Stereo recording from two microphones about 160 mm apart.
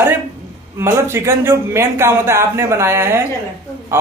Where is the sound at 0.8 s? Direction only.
15° right (ahead or behind).